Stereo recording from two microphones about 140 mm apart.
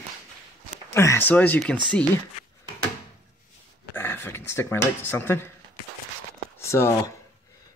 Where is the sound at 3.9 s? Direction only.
15° left (ahead or behind).